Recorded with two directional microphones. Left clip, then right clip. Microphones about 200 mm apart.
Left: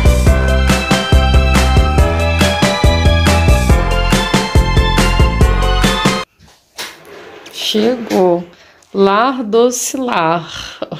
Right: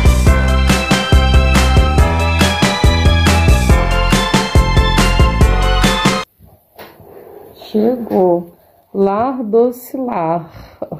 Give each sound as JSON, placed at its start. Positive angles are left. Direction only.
{"t": 0.0, "sound": "music", "side_deg": 0}
{"t": 7.8, "sound": "speech", "side_deg": 20}
{"t": 9.0, "sound": "speech", "side_deg": 5}
{"t": 9.5, "sound": "speech", "side_deg": 20}
{"t": 10.0, "sound": "speech", "side_deg": 5}